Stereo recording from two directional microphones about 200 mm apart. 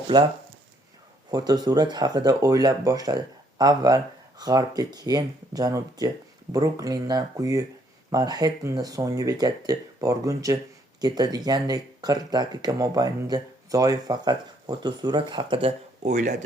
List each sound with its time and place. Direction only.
0.1 s speech: 20° right (ahead or behind)
1.3 s speech: 20° right (ahead or behind); by 16.3 s 35° right (ahead or behind)